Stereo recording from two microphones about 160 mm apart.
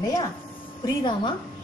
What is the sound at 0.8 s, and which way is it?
Speech, 30° left (ahead or behind).